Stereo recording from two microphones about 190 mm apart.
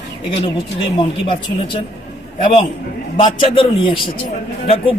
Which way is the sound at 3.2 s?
25° left (ahead or behind).